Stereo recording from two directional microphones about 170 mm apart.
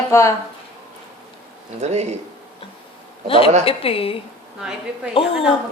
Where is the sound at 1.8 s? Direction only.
40° right (ahead or behind).